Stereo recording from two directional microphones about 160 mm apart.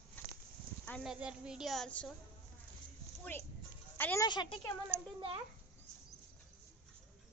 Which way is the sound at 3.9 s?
15° left (ahead or behind).